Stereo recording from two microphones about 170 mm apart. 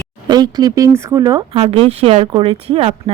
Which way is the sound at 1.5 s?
35° right (ahead or behind).